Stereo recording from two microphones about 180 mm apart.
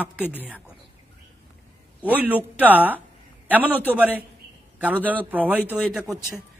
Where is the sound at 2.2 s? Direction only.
10° right (ahead or behind).